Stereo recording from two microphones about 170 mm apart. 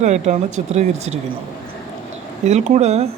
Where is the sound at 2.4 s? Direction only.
40° right (ahead or behind).